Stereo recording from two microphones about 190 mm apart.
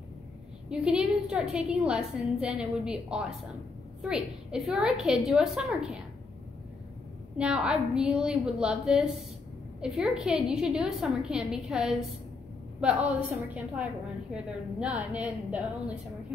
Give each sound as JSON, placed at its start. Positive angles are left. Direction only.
{"t": 0.7, "sound": "a woman's voice", "side_deg": -5}
{"t": 7.3, "sound": "a woman's voice", "side_deg": -5}